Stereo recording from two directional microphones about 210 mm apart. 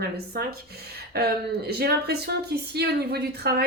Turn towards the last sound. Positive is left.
turn(degrees=-50)  # may be behind; listen again after turning